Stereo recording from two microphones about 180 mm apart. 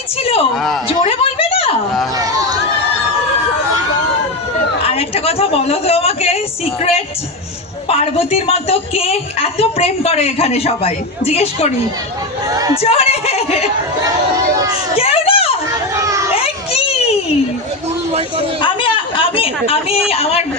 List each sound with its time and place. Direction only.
0.2 s a sound: 35° left (ahead or behind)
0.5 s speech: centre (ahead or behind)
0.9 s a sound: 30° left (ahead or behind)
4.9 s a woman's voice: 35° left (ahead or behind)
7.9 s a woman's voice: 35° left (ahead or behind)
12.7 s a woman's voice: 35° left (ahead or behind)
14.9 s children playing: 35° left (ahead or behind)
16.0 s children playing: 15° right (ahead or behind)
16.4 s children playing: 35° left (ahead or behind)
18.6 s a sound: 30° left (ahead or behind)
20.1 s a woman's voice: 35° left (ahead or behind)